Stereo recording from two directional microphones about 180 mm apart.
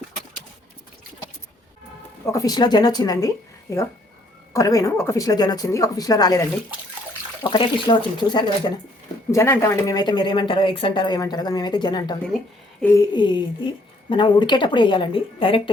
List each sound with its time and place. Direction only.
2.2 s speech: 20° left (ahead or behind)